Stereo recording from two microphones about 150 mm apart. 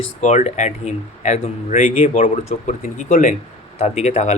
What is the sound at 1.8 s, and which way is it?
Speech, 55° left (ahead or behind).